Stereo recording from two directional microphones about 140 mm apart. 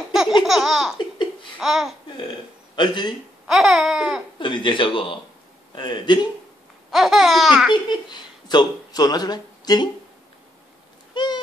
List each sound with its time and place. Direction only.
0.5 s laughter: centre (ahead or behind)
2.7 s speech: 35° left (ahead or behind)
3.4 s laughter: 5° right (ahead or behind)
4.4 s speech: 35° left (ahead or behind)
6.9 s laughter: centre (ahead or behind)
7.7 s speech: 30° left (ahead or behind)
11.1 s a sound: 30° left (ahead or behind)